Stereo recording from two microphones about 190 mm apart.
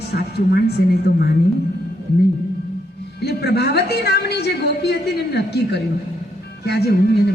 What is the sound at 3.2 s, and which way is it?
A woman's voice, 60° left (ahead or behind).